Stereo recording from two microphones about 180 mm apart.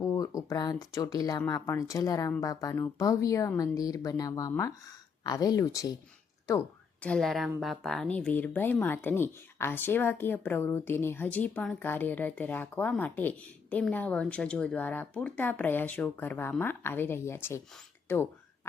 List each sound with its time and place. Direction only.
0.0 s speech: 20° left (ahead or behind)
7.0 s speech: 5° left (ahead or behind)